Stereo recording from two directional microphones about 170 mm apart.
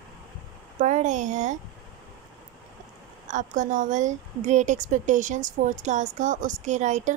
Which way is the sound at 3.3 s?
45° right (ahead or behind).